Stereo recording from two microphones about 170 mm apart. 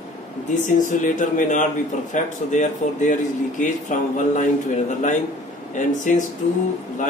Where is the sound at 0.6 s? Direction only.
45° left (ahead or behind).